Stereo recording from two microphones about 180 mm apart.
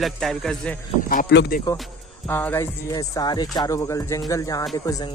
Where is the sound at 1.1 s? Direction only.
50° left (ahead or behind).